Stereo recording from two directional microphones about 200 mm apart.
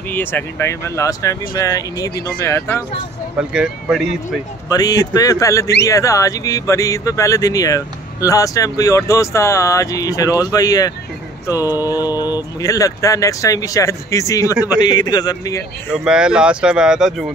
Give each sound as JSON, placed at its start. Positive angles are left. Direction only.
{"t": 0.1, "sound": "speech", "side_deg": 10}
{"t": 3.3, "sound": "speech", "side_deg": -5}
{"t": 4.6, "sound": "speech", "side_deg": 15}
{"t": 15.9, "sound": "speech", "side_deg": -5}